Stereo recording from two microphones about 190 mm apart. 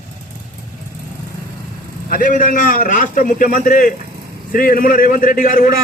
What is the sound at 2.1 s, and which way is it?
A man's voice, 45° left (ahead or behind).